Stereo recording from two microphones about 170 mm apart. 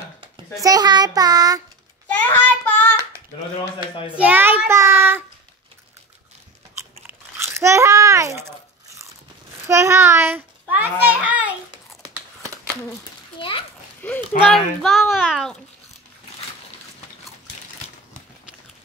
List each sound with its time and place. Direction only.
0.6 s child singing: 20° right (ahead or behind)
2.1 s child singing: 10° left (ahead or behind)
4.2 s child singing: 10° right (ahead or behind)
6.8 s crunch: 15° right (ahead or behind)
9.7 s a child's voice: 15° right (ahead or behind)
11.7 s a sound: 25° right (ahead or behind)
13.4 s a sound: 30° left (ahead or behind)
14.0 s a sound: 10° left (ahead or behind)
14.5 s speech: centre (ahead or behind)